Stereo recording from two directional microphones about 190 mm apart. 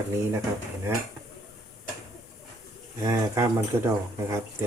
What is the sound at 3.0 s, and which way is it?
Speech, 20° right (ahead or behind).